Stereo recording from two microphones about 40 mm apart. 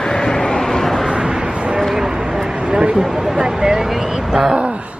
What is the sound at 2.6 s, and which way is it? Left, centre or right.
Speech, right.